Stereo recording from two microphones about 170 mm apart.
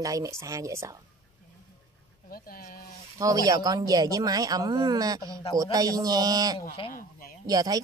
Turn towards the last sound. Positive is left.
turn(degrees=-20)  # may be behind; listen again after turning